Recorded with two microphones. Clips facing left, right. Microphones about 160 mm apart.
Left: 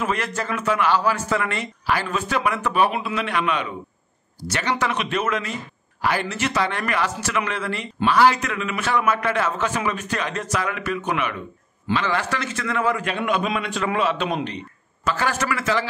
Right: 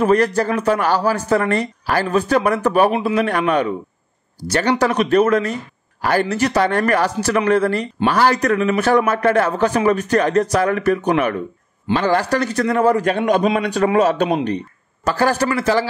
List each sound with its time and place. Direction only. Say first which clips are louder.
0.0 s a man's voice: right 10 dB; 40° right (ahead or behind)